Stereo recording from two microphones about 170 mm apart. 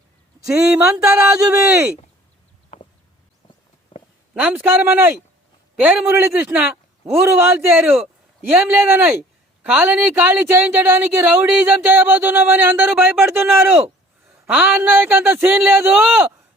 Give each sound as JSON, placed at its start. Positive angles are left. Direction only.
{"t": 0.5, "sound": "speech", "side_deg": -5}
{"t": 0.9, "sound": "music", "side_deg": -20}
{"t": 1.5, "sound": "speech", "side_deg": -10}
{"t": 2.7, "sound": "a sound", "side_deg": 45}
{"t": 4.4, "sound": "speech", "side_deg": -10}
{"t": 13.3, "sound": "speech", "side_deg": -10}